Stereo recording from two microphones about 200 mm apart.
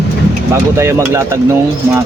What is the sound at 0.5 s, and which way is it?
Speech, 15° right (ahead or behind).